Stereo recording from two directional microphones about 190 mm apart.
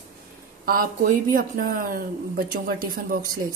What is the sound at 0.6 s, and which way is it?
Speech, 50° right (ahead or behind).